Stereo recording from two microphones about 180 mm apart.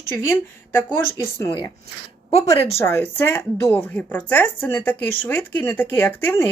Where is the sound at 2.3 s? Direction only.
35° left (ahead or behind).